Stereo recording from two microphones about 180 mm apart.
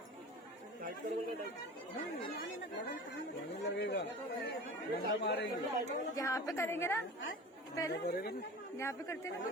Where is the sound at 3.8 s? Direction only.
75° left (ahead or behind).